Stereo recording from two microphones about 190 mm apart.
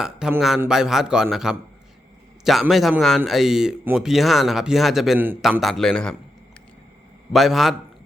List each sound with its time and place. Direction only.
0.0 s speech: 5° right (ahead or behind)
7.3 s speech: centre (ahead or behind)